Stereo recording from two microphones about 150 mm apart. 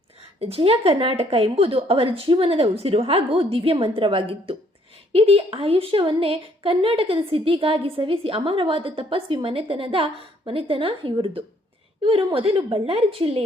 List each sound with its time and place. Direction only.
0.3 s a woman's voice: 40° right (ahead or behind)